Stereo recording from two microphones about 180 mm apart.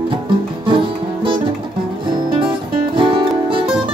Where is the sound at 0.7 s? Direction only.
30° right (ahead or behind).